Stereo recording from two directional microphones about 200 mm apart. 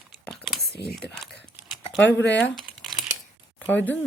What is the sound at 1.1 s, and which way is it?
Typing, centre (ahead or behind).